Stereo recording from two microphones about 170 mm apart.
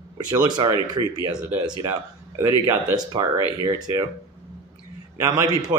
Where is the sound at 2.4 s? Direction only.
20° right (ahead or behind).